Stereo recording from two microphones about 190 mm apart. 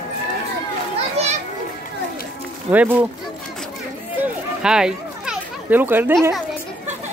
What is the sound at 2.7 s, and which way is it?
Speech, 10° right (ahead or behind).